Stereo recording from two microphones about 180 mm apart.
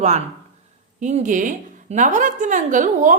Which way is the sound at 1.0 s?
45° right (ahead or behind).